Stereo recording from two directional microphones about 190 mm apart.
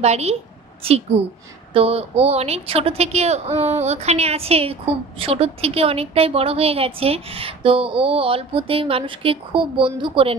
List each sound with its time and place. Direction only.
0.0 s speech: 35° right (ahead or behind)
1.7 s a woman's voice: 30° right (ahead or behind)